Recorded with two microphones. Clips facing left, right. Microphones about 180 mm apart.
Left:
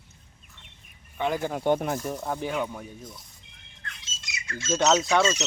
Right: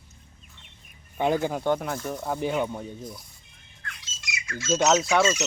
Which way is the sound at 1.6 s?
20° left (ahead or behind).